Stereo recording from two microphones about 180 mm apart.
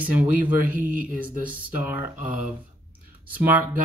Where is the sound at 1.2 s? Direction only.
10° right (ahead or behind).